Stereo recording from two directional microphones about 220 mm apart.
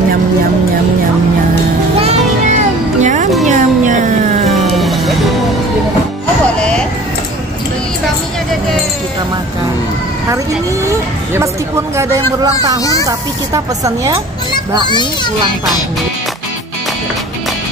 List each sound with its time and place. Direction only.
2.0 s music: 30° right (ahead or behind)
4.7 s music: centre (ahead or behind)
11.3 s speech: 10° right (ahead or behind)